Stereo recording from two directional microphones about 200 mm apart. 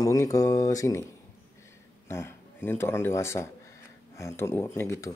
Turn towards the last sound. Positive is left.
turn(degrees=15)  # may be behind; listen again after turning